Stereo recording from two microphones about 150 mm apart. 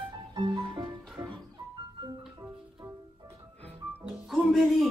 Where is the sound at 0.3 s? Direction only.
30° right (ahead or behind).